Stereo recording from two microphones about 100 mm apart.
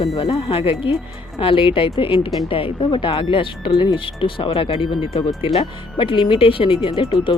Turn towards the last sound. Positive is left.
turn(degrees=60)  # may be behind; listen again after turning